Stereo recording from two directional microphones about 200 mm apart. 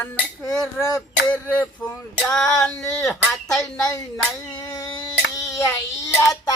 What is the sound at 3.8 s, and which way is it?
Speech, 20° left (ahead or behind).